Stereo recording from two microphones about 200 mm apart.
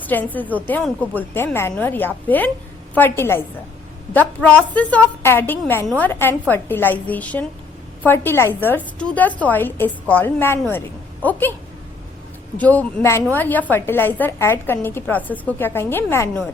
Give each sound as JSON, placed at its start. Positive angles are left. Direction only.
{"t": 0.0, "sound": "a woman's voice", "side_deg": 10}
{"t": 12.5, "sound": "a woman's voice", "side_deg": 10}